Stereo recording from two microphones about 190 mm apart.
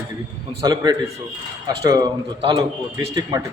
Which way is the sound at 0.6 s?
20° right (ahead or behind).